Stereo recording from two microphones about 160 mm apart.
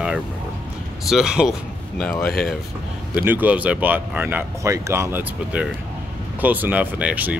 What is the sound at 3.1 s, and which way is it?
Speech, 10° right (ahead or behind).